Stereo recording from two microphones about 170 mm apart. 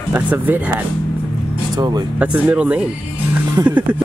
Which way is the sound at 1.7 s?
25° right (ahead or behind).